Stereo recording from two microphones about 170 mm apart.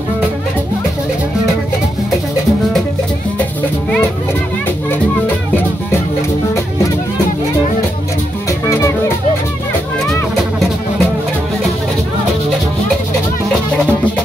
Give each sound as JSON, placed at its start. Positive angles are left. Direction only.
{"t": 8.5, "sound": "music", "side_deg": 20}
{"t": 10.3, "sound": "music", "side_deg": 0}